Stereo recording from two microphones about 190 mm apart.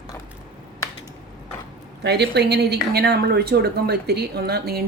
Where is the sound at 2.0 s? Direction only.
60° right (ahead or behind).